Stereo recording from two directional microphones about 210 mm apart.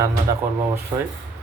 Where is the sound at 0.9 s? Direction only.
15° right (ahead or behind).